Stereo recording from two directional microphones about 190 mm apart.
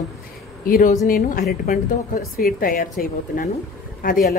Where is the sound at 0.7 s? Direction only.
50° left (ahead or behind).